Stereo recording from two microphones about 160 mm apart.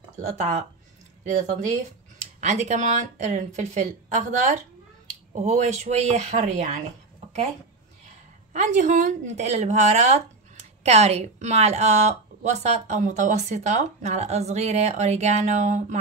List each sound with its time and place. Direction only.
0.4 s speech: 45° right (ahead or behind)
2.1 s speech: 45° right (ahead or behind)
8.5 s speech: 50° right (ahead or behind)